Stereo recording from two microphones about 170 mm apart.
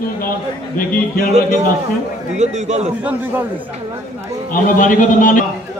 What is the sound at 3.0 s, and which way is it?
Speech, 10° right (ahead or behind).